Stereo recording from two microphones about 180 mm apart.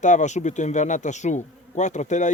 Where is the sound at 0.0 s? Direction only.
40° left (ahead or behind).